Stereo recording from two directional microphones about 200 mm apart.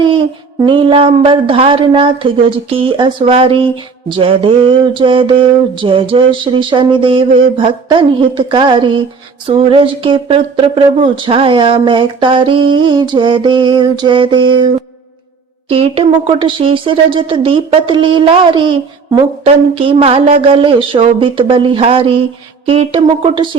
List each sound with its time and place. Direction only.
0.6 s speech: 25° right (ahead or behind)
15.7 s speech: 30° right (ahead or behind)